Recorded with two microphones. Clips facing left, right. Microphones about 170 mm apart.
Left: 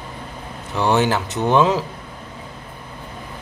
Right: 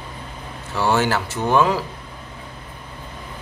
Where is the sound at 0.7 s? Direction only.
20° left (ahead or behind).